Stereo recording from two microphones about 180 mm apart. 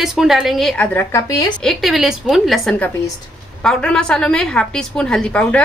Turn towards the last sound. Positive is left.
turn(degrees=5)  # may be behind; listen again after turning